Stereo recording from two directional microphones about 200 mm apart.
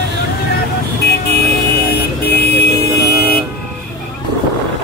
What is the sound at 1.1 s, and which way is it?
Vehicle, 50° left (ahead or behind).